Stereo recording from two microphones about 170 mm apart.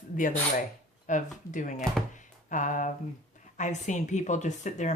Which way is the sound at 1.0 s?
50° left (ahead or behind).